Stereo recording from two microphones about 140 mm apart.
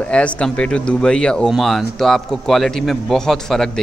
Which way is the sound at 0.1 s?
10° left (ahead or behind).